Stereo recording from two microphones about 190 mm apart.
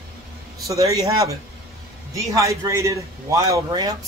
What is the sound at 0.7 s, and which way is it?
Speech, 20° right (ahead or behind).